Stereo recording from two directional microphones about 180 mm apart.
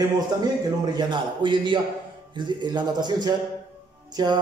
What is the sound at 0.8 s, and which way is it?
A man's voice, 25° right (ahead or behind).